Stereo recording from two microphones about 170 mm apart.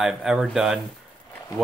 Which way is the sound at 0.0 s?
Centre (ahead or behind).